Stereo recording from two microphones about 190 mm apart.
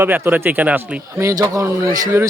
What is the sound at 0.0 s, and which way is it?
Speech, 10° right (ahead or behind).